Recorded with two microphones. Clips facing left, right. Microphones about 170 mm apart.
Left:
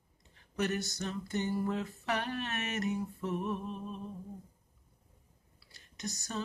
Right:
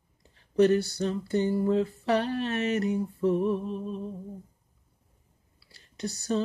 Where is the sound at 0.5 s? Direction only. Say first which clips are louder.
Right 12 dB; 35° right (ahead or behind).